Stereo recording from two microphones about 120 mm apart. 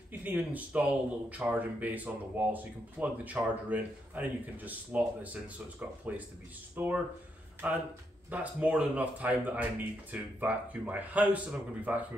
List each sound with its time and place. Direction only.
0.2 s speech: 15° right (ahead or behind)